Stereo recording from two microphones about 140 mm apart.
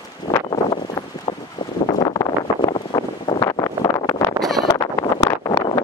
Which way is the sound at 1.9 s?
30° left (ahead or behind).